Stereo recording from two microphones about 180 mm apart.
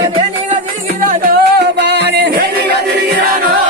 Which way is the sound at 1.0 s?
60° right (ahead or behind).